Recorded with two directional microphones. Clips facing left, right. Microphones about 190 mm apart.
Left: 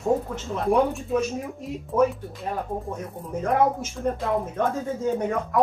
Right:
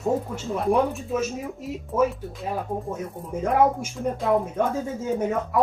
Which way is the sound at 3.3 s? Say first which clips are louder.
Right 1 dB; 10° right (ahead or behind).